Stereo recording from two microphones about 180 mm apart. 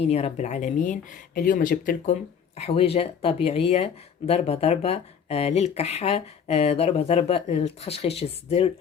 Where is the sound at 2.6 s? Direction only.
35° left (ahead or behind).